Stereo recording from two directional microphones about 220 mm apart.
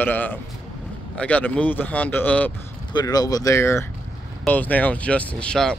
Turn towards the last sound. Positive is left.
turn(degrees=5)  # may be behind; listen again after turning